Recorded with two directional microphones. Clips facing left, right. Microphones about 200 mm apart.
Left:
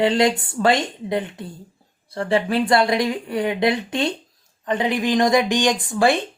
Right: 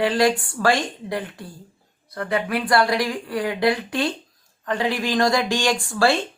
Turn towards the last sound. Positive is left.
turn(degrees=20)  # may be behind; listen again after turning